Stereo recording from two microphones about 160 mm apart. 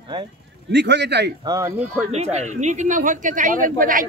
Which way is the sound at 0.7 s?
90° right.